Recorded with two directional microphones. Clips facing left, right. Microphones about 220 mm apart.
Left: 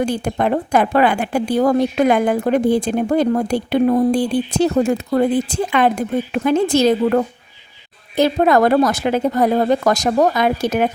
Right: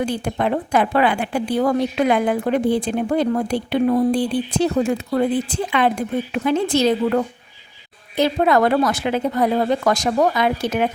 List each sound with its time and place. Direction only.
0.0 s a woman's voice: 45° left (ahead or behind)